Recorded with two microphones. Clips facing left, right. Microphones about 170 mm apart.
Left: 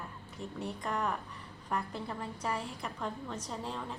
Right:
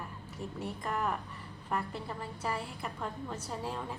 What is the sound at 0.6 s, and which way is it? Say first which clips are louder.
Speech: even; 5° right (ahead or behind).